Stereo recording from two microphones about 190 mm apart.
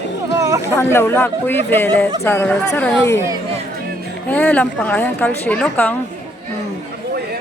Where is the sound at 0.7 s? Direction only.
10° left (ahead or behind).